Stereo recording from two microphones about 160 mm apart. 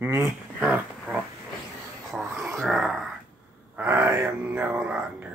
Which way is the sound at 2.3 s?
15° right (ahead or behind).